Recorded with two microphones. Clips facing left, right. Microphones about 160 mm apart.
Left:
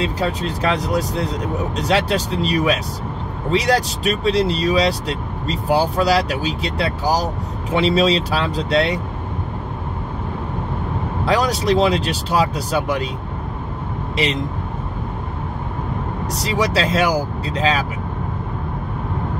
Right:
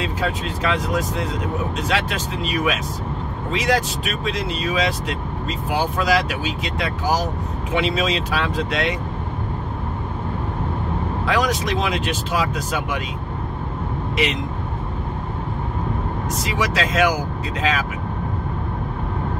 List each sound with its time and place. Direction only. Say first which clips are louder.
0.0 s speech: left 3 dB; 35° left (ahead or behind)
11.2 s speech: left 4 dB; 35° left (ahead or behind)
14.1 s speech: left 2 dB; 30° left (ahead or behind)
16.3 s speech: left 4 dB; 35° left (ahead or behind)